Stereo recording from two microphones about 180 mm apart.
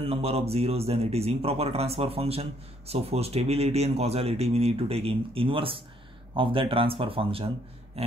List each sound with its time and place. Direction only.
0.0 s speech: 35° right (ahead or behind)